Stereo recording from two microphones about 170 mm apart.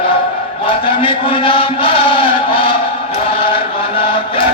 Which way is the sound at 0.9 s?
30° left (ahead or behind).